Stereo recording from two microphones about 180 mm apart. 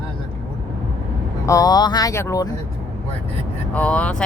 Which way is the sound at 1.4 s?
20° left (ahead or behind).